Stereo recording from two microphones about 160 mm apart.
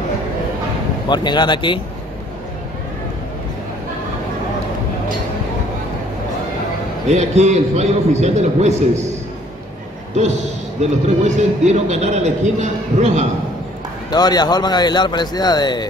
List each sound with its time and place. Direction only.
1.0 s speech: 30° left (ahead or behind)
7.1 s a man's voice: 45° right (ahead or behind)
10.8 s a man's voice: 45° right (ahead or behind)
14.1 s speech: 25° left (ahead or behind)